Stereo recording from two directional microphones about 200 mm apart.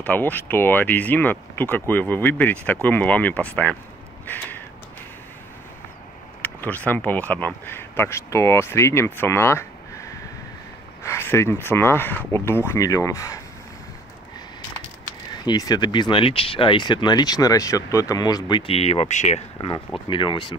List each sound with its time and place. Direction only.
0.0 s speech: 10° left (ahead or behind)
4.3 s a sound: 10° left (ahead or behind)
6.4 s speech: 10° left (ahead or behind)
15.4 s speech: 20° left (ahead or behind)